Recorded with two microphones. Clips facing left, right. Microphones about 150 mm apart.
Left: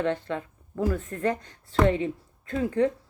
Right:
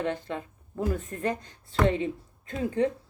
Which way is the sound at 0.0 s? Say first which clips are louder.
Left 3 dB; 15° right (ahead or behind).